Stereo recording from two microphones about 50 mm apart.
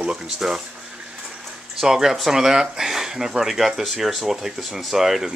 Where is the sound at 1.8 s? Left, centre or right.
Centre.